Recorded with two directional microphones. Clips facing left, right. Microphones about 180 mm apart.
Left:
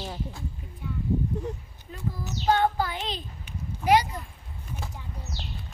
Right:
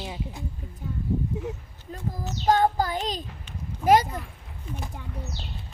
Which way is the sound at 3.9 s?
45° right (ahead or behind).